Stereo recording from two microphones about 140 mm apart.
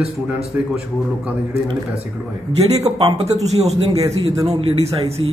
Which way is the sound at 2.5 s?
50° right (ahead or behind).